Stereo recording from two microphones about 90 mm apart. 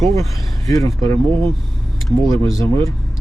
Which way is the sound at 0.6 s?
40° left (ahead or behind).